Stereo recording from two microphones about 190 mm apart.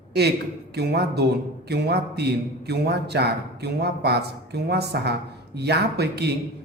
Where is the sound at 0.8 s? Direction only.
60° right (ahead or behind).